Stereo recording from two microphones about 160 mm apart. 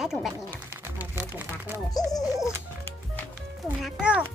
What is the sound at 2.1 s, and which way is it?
Music, 20° left (ahead or behind).